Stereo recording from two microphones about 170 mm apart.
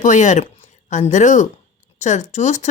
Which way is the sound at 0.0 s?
45° left (ahead or behind).